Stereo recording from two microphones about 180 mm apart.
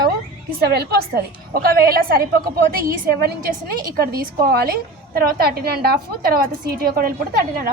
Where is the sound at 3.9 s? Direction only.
55° right (ahead or behind).